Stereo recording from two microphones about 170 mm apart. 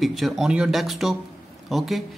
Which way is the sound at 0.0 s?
Centre (ahead or behind).